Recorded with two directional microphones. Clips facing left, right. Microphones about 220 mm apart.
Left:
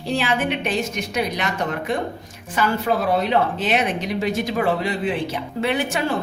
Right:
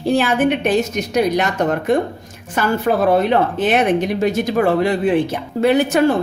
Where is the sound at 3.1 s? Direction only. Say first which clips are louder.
Right 4 dB; 50° right (ahead or behind).